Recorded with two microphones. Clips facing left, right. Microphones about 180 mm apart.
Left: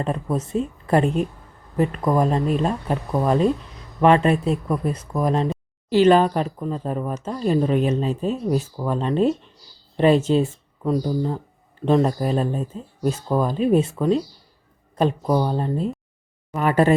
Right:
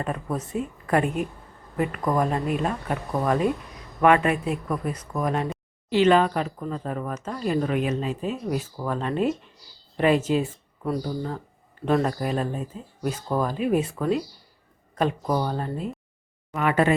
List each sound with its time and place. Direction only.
0.0 s speech: 25° left (ahead or behind)
14.9 s speech: 30° left (ahead or behind)